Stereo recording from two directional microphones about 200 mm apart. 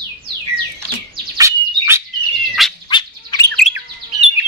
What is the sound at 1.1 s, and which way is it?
Chirp, 15° right (ahead or behind).